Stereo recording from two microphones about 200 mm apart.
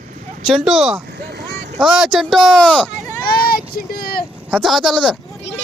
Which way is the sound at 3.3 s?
50° left (ahead or behind).